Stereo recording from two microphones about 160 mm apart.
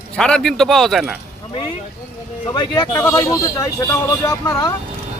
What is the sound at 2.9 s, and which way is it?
A man's voice, 15° left (ahead or behind).